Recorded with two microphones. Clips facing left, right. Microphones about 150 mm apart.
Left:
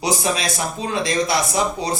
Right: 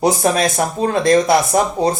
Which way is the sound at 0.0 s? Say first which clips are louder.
Right 7 dB; 50° right (ahead or behind).